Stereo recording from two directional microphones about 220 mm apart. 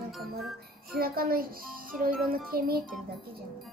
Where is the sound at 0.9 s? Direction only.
45° right (ahead or behind).